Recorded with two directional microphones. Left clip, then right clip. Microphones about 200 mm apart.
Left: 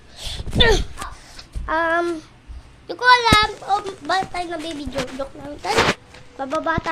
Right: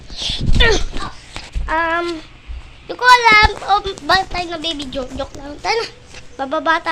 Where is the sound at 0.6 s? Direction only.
15° left (ahead or behind).